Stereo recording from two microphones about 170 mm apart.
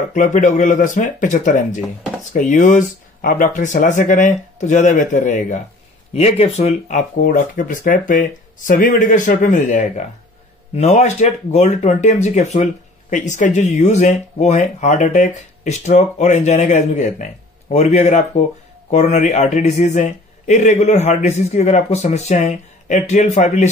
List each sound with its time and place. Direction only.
0.1 s speech: 50° left (ahead or behind)